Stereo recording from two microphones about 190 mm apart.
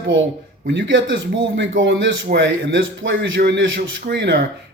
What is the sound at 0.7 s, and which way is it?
A man's voice, 70° right (ahead or behind).